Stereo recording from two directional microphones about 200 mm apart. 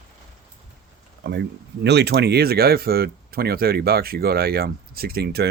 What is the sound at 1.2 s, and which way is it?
Speech, 60° right (ahead or behind).